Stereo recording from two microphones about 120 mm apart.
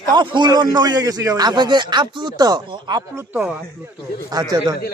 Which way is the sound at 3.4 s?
5° right (ahead or behind).